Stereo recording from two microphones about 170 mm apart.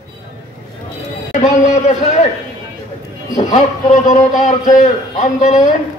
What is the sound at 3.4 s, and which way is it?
Speech, 45° left (ahead or behind).